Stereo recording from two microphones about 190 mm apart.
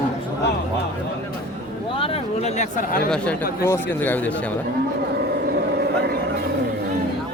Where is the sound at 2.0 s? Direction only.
30° left (ahead or behind).